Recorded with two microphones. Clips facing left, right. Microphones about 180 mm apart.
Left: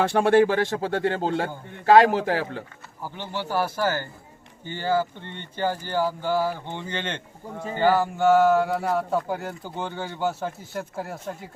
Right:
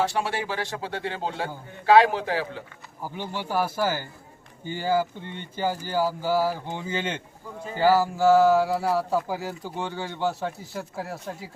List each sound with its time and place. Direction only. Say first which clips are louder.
0.0 s speech: left 8 dB; 55° left (ahead or behind)
3.0 s speech: even; 15° right (ahead or behind)